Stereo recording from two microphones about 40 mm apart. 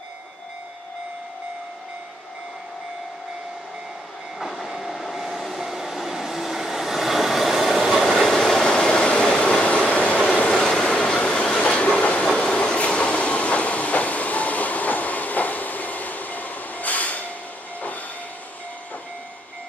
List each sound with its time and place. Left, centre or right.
4.4 s train: centre
7.9 s train: centre
8.6 s train: left